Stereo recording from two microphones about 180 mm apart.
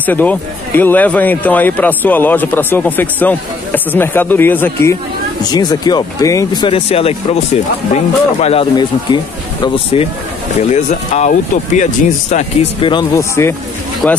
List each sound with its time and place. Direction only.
0.0 s speech: 10° left (ahead or behind); by 8.6 s 35° left (ahead or behind)
8.7 s speech: 25° left (ahead or behind)
10.7 s speech: 40° left (ahead or behind)
12.8 s speech: 20° left (ahead or behind)
14.0 s speech: centre (ahead or behind)